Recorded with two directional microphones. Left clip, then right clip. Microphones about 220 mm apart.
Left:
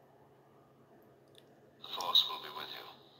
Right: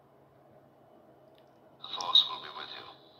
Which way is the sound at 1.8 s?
10° left (ahead or behind).